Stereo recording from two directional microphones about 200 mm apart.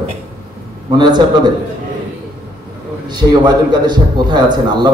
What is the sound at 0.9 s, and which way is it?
Speech, 20° right (ahead or behind).